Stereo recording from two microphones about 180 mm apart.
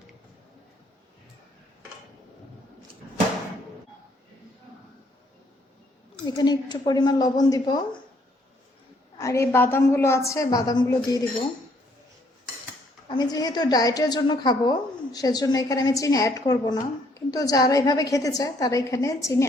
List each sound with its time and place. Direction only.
6.2 s a woman's voice: 25° left (ahead or behind)
9.1 s a woman's voice: 15° left (ahead or behind)
13.1 s a woman's voice: 20° left (ahead or behind)